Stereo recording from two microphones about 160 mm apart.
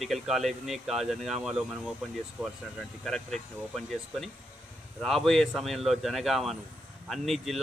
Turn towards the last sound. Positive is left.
turn(degrees=0)  # may be behind; listen again after turning